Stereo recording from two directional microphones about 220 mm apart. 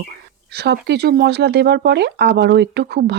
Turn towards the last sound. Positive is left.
turn(degrees=-50)  # may be behind; listen again after turning